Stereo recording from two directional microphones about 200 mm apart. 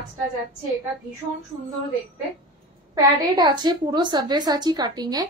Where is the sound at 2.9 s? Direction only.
20° right (ahead or behind).